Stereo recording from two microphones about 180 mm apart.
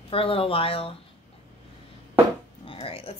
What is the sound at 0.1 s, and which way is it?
Speech, 30° left (ahead or behind).